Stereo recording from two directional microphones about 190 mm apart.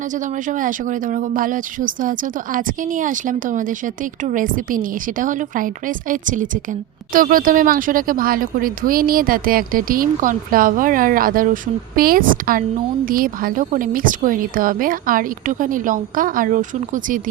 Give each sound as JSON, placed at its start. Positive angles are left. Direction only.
{"t": 0.1, "sound": "speech", "side_deg": -45}